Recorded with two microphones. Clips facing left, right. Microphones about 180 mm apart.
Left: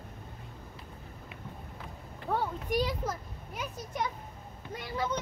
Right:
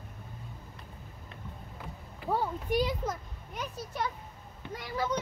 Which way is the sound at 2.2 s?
5° right (ahead or behind).